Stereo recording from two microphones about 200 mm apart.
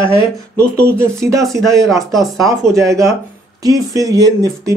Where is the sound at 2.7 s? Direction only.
15° right (ahead or behind).